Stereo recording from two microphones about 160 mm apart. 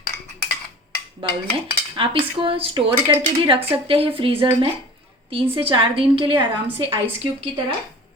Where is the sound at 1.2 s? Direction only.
35° right (ahead or behind).